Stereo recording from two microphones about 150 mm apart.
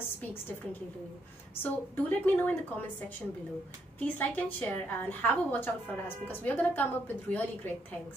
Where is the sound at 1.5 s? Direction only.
15° left (ahead or behind).